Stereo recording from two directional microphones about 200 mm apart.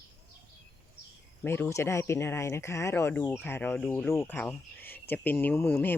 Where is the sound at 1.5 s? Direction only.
10° left (ahead or behind).